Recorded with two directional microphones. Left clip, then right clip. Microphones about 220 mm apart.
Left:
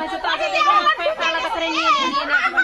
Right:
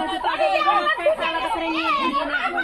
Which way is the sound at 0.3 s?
50° left (ahead or behind).